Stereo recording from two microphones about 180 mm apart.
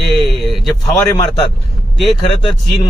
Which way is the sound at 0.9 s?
20° left (ahead or behind).